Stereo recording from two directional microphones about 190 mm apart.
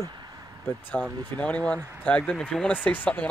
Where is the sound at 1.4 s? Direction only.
5° left (ahead or behind).